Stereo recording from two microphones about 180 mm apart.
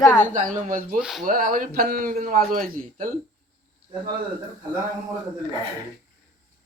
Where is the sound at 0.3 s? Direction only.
45° right (ahead or behind).